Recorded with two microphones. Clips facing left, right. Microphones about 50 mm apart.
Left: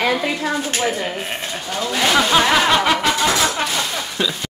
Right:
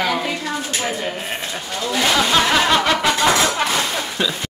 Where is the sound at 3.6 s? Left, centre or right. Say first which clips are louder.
Right 2 dB; centre.